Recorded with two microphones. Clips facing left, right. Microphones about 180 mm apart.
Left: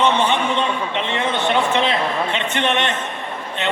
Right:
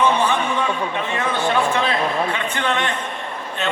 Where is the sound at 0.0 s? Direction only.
25° left (ahead or behind).